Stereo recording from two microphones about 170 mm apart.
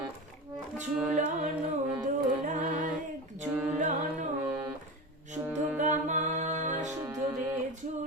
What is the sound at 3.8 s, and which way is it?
Carnatic music, 45° right (ahead or behind).